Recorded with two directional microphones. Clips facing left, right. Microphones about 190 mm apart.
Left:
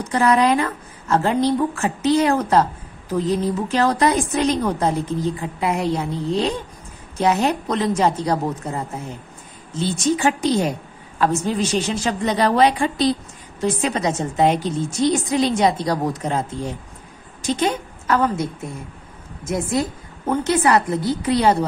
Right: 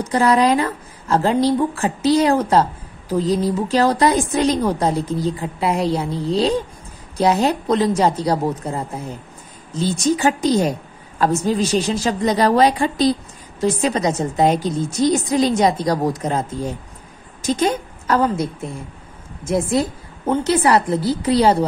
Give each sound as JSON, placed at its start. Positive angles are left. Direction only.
{"t": 0.1, "sound": "a woman's voice", "side_deg": -35}
{"t": 9.8, "sound": "a woman's voice", "side_deg": -40}